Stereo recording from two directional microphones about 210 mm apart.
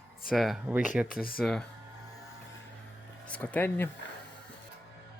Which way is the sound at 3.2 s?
5° left (ahead or behind).